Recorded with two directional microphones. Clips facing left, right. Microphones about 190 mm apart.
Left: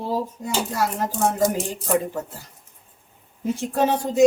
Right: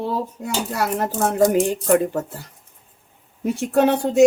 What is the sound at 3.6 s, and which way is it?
Speech, 70° right (ahead or behind).